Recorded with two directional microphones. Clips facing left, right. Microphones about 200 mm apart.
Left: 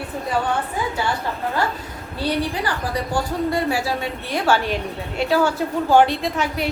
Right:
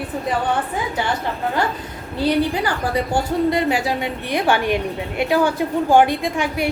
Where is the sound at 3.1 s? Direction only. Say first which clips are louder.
Right 2 dB; 20° right (ahead or behind).